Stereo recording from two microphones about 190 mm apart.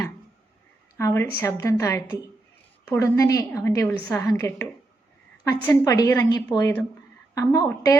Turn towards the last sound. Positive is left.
turn(degrees=15)  # may be behind; listen again after turning